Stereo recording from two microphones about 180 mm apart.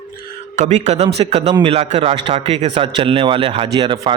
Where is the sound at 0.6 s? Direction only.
40° right (ahead or behind).